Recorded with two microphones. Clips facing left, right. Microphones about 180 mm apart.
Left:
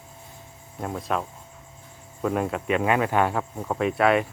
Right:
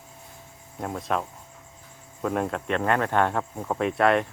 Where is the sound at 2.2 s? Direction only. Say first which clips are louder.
Left 2 dB; centre (ahead or behind).